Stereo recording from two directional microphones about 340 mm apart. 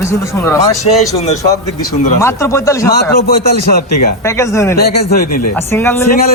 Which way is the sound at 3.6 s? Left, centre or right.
Left.